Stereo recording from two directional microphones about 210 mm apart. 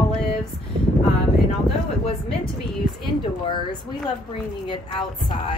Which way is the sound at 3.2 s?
25° left (ahead or behind).